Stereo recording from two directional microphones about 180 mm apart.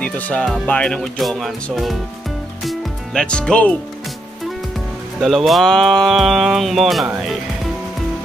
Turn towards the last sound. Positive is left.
turn(degrees=0)  # may be behind; listen again after turning